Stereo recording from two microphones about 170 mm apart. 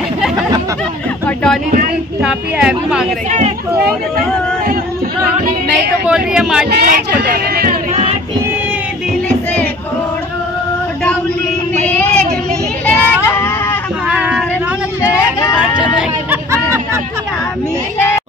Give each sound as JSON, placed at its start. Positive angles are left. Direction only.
{"t": 1.2, "sound": "a sound", "side_deg": 5}
{"t": 2.2, "sound": "speech", "side_deg": -5}
{"t": 3.3, "sound": "speech", "side_deg": -40}
{"t": 6.0, "sound": "speech", "side_deg": -5}
{"t": 6.7, "sound": "speech", "side_deg": -75}
{"t": 7.9, "sound": "music", "side_deg": -35}
{"t": 11.8, "sound": "child singing", "side_deg": 10}
{"t": 13.3, "sound": "a sound", "side_deg": 15}
{"t": 14.0, "sound": "a sound", "side_deg": -5}
{"t": 15.0, "sound": "a sound", "side_deg": 20}
{"t": 16.0, "sound": "hubbub", "side_deg": -15}
{"t": 17.9, "sound": "speech", "side_deg": 15}